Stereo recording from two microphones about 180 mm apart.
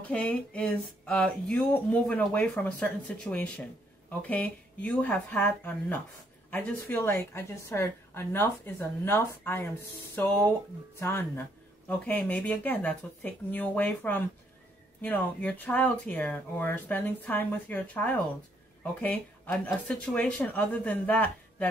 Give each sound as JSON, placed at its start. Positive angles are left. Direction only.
{"t": 0.0, "sound": "a woman's voice", "side_deg": 5}